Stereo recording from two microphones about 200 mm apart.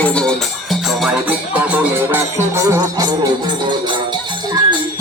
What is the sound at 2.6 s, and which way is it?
Music, 20° right (ahead or behind).